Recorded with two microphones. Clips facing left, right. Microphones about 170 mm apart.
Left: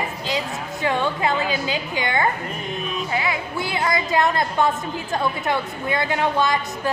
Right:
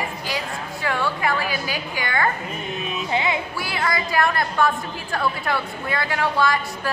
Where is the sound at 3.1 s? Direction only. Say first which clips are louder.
Right 3 dB; 25° right (ahead or behind).